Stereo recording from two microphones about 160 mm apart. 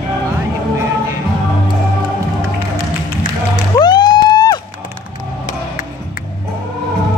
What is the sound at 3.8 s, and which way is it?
Music, 25° left (ahead or behind).